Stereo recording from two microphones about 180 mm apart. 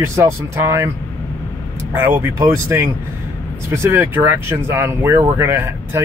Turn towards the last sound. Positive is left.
turn(degrees=-15)  # may be behind; listen again after turning